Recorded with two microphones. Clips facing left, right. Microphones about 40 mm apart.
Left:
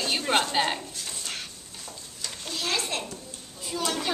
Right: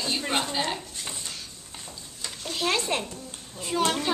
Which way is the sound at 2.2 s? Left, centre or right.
Centre.